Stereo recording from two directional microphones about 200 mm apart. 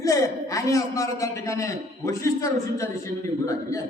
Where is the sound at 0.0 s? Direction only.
15° left (ahead or behind).